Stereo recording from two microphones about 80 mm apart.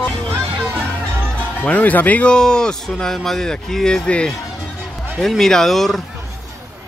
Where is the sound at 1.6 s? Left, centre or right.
Centre.